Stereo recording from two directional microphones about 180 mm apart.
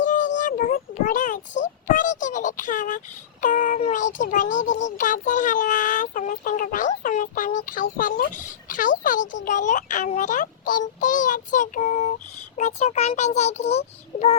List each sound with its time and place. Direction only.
0.0 s child singing: 45° left (ahead or behind)
1.6 s a child's voice: 45° left (ahead or behind)